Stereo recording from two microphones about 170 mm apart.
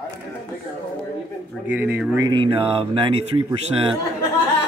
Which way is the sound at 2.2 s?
30° right (ahead or behind).